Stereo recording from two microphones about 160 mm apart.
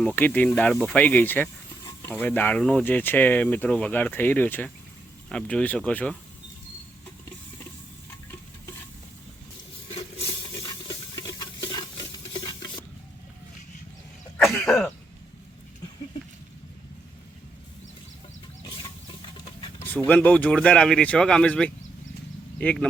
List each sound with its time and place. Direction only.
0.2 s speech: 10° left (ahead or behind)
11.1 s stir: 25° left (ahead or behind)
12.3 s a sound: 25° left (ahead or behind)
14.4 s throat clearing: 5° left (ahead or behind)
20.1 s speech: 10° left (ahead or behind)